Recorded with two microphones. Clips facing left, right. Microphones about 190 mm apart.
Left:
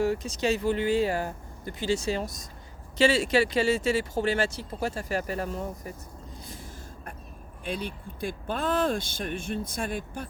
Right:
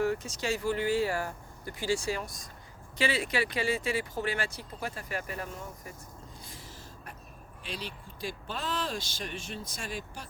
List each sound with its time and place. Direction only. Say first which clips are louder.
0.2 s speech: left 6 dB; 20° left (ahead or behind)
7.6 s speech: left 7 dB; 55° left (ahead or behind)